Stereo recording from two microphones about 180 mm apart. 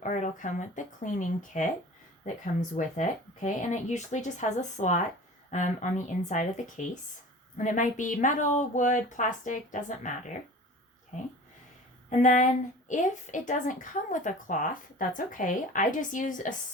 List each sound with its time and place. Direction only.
0.0 s a woman's voice: 45° left (ahead or behind)